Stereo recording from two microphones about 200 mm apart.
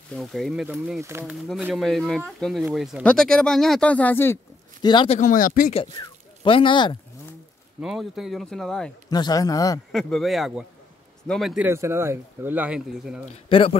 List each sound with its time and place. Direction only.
0.1 s speech: centre (ahead or behind)
1.0 s speech: 10° right (ahead or behind)
1.3 s speech: centre (ahead or behind)
4.8 s a man's voice: 25° left (ahead or behind)
5.2 s speech: 40° left (ahead or behind)
5.9 s speech: 25° left (ahead or behind)
7.8 s speech: centre (ahead or behind)
9.1 s speech: 20° left (ahead or behind)
9.9 s speech: centre (ahead or behind)
13.2 s a man's voice: 30° left (ahead or behind)